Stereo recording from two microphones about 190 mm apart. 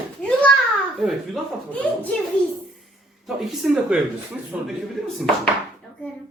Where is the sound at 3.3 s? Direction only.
Centre (ahead or behind).